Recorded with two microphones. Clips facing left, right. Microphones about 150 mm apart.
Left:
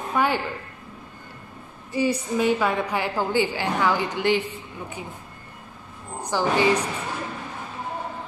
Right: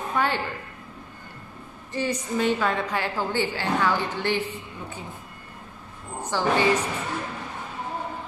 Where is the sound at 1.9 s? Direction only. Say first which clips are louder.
Left 3 dB; 10° left (ahead or behind).